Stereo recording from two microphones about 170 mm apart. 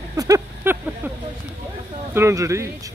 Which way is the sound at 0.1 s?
20° right (ahead or behind).